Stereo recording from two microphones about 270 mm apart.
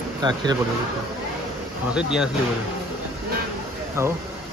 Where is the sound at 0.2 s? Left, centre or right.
Centre.